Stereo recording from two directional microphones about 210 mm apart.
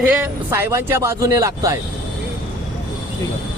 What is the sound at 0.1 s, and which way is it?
A man's voice, 10° right (ahead or behind).